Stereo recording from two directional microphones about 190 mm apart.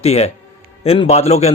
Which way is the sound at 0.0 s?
35° left (ahead or behind).